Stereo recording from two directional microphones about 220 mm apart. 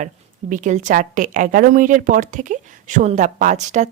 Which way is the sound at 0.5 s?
35° right (ahead or behind).